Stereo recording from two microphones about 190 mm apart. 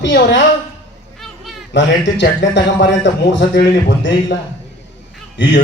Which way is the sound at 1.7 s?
70° left (ahead or behind).